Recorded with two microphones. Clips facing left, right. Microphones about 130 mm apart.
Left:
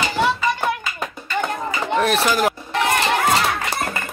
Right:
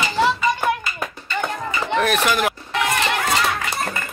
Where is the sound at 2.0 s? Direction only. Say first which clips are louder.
Left 1 dB; 30° left (ahead or behind).